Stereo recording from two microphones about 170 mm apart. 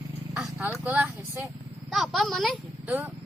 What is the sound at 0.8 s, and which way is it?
Speech, 10° right (ahead or behind).